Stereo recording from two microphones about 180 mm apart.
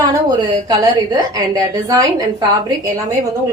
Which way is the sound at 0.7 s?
20° right (ahead or behind).